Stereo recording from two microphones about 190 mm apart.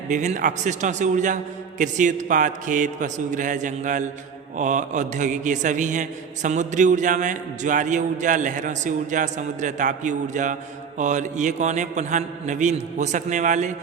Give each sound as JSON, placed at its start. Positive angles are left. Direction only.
{"t": 0.1, "sound": "a man's voice", "side_deg": -40}